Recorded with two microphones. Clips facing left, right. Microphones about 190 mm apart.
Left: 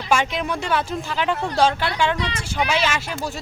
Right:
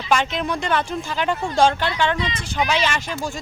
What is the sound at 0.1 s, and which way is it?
Speech, 10° left (ahead or behind).